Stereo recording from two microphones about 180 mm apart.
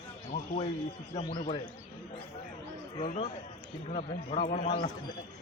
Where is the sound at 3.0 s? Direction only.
45° left (ahead or behind).